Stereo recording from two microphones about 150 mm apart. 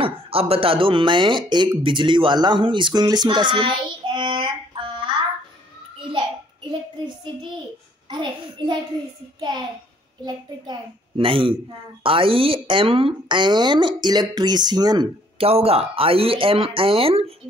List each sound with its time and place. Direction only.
0.0 s speech: 40° right (ahead or behind)
8.1 s speech: 30° right (ahead or behind)
10.2 s speech: 30° right (ahead or behind)
15.4 s speech: 40° right (ahead or behind)